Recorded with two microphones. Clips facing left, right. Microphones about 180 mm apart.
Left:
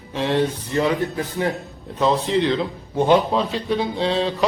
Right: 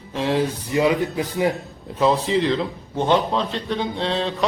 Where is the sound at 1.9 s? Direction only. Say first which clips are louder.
Even; centre (ahead or behind).